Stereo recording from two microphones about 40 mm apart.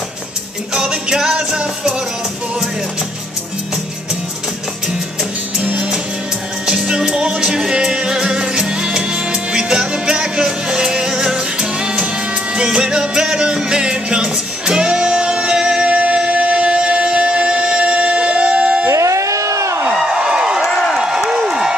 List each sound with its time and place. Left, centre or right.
0.7 s music: centre
5.6 s music: right
15.9 s music: right
19.9 s a sound: centre